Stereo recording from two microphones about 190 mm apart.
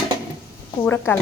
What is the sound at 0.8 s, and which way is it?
Speech, 10° left (ahead or behind).